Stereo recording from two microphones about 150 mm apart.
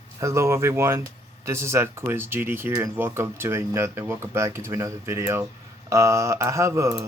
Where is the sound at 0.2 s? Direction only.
20° right (ahead or behind).